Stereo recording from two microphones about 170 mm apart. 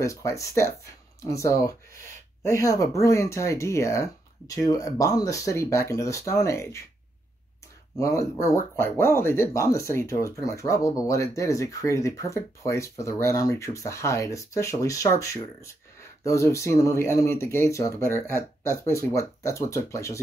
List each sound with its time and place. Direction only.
0.0 s speech: 20° left (ahead or behind)
8.0 s speech: 20° left (ahead or behind)